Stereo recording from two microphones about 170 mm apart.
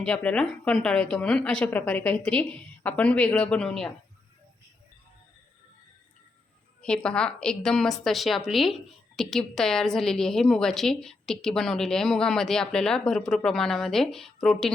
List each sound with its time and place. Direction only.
0.0 s a woman's voice: 5° left (ahead or behind)
6.8 s a woman's voice: 5° left (ahead or behind)